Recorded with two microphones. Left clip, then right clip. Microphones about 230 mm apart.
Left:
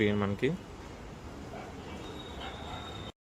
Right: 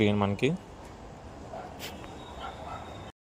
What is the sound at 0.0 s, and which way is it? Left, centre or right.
Speech, right.